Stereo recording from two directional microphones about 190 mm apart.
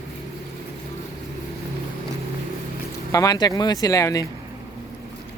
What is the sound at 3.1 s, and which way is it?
Speech, 20° left (ahead or behind).